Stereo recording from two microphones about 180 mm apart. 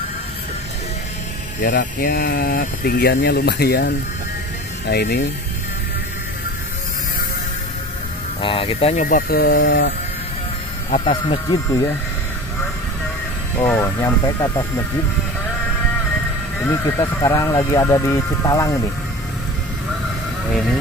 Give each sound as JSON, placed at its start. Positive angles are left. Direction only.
{"t": 1.6, "sound": "speech", "side_deg": 55}
{"t": 8.4, "sound": "speech", "side_deg": 30}
{"t": 9.0, "sound": "speech", "side_deg": 55}
{"t": 11.1, "sound": "speech", "side_deg": 25}
{"t": 13.7, "sound": "speech", "side_deg": 15}
{"t": 16.6, "sound": "speech", "side_deg": 20}